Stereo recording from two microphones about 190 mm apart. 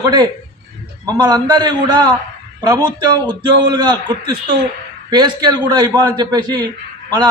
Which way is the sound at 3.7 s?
25° right (ahead or behind).